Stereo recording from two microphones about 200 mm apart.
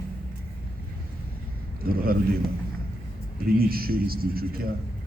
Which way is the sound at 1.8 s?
50° right (ahead or behind).